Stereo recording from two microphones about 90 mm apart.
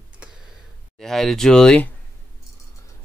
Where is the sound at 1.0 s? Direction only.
5° left (ahead or behind).